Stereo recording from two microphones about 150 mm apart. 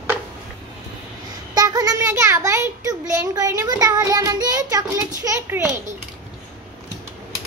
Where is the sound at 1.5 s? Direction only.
25° right (ahead or behind).